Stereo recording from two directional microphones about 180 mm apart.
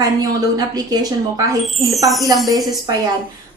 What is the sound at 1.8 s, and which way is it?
Speech, centre (ahead or behind).